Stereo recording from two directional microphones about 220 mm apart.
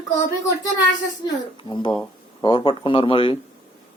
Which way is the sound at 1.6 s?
20° left (ahead or behind).